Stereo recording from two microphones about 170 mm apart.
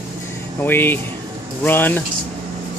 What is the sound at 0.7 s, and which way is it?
Speech, 10° left (ahead or behind).